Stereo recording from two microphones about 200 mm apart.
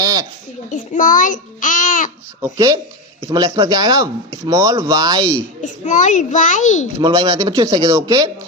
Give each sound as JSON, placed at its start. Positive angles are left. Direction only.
{"t": 0.0, "sound": "a sound", "side_deg": -20}
{"t": 0.7, "sound": "a child's voice", "side_deg": 40}
{"t": 2.4, "sound": "a man's voice", "side_deg": -20}
{"t": 5.6, "sound": "a child's voice", "side_deg": 40}
{"t": 7.0, "sound": "a man's voice", "side_deg": -20}